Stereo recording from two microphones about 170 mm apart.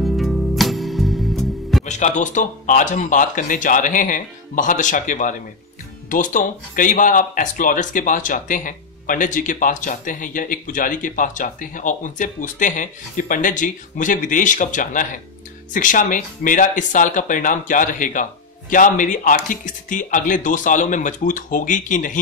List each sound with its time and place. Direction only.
0.0 s music: centre (ahead or behind)
1.9 s speech: 45° left (ahead or behind)